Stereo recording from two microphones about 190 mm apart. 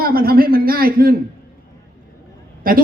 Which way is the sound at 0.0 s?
50° right (ahead or behind).